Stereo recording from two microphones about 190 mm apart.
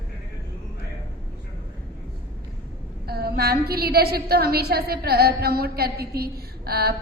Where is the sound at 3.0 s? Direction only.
55° right (ahead or behind).